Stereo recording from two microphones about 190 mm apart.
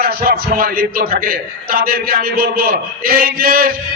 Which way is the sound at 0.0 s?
55° right (ahead or behind).